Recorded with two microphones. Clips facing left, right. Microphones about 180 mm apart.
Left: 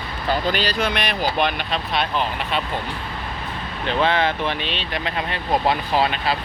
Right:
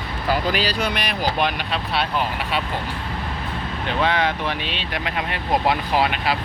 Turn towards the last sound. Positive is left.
turn(degrees=-10)  # may be behind; listen again after turning